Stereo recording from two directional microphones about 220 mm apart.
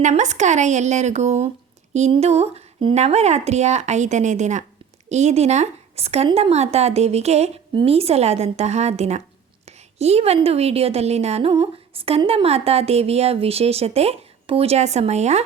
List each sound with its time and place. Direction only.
0.0 s a woman's voice: 30° right (ahead or behind)